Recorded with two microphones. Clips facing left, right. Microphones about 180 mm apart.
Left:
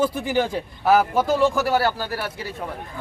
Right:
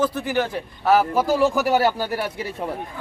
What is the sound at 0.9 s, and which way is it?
Speech, centre (ahead or behind).